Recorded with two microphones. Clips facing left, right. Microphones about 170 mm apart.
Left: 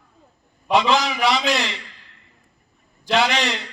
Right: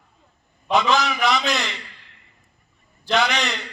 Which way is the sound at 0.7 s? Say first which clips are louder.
Left 1 dB; 30° left (ahead or behind).